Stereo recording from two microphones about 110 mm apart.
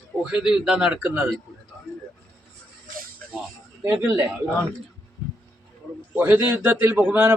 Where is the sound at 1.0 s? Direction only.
15° right (ahead or behind).